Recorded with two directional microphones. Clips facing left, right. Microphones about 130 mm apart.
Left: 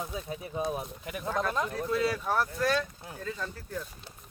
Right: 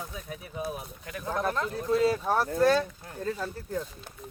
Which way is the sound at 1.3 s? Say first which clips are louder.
Right 1 dB; 20° right (ahead or behind).